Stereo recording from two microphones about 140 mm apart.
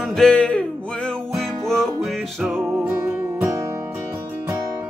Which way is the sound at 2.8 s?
15° right (ahead or behind).